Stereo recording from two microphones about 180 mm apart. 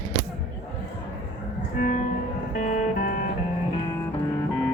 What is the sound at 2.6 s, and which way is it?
Music, 45° left (ahead or behind).